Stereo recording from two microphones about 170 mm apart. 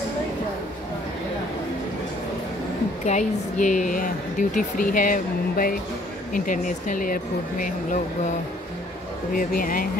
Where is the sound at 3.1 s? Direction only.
45° left (ahead or behind).